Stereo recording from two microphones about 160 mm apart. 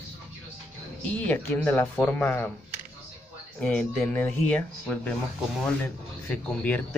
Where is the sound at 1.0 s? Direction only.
10° left (ahead or behind).